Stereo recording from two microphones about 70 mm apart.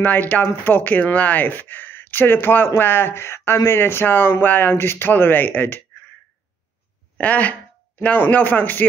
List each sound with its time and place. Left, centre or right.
0.0 s speech: left
7.2 s speech: left